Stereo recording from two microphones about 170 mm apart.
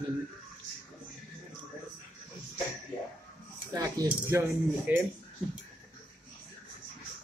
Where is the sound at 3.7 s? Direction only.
20° right (ahead or behind).